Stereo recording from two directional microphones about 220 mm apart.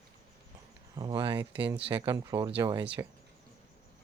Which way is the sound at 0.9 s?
20° right (ahead or behind).